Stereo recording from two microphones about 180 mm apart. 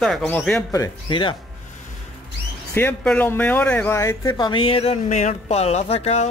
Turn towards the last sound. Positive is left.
turn(degrees=35)  # may be behind; listen again after turning